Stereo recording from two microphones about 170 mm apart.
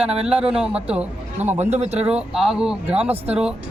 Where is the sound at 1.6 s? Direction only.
40° right (ahead or behind).